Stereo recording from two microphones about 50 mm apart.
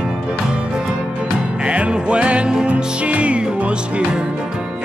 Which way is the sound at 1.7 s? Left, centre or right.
Right.